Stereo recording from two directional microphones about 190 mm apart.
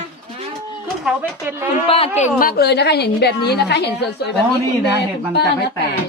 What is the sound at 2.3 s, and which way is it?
A woman's voice, 55° left (ahead or behind).